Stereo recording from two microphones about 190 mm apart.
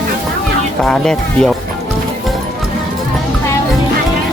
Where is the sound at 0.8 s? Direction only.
5° left (ahead or behind).